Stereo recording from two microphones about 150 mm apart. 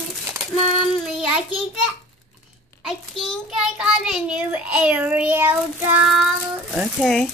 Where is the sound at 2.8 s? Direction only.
Centre (ahead or behind).